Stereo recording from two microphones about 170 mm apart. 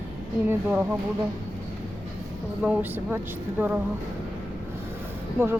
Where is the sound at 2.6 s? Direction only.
10° right (ahead or behind).